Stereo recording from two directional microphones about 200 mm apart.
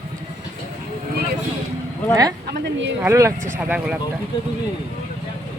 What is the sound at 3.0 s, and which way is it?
Speech, 15° right (ahead or behind).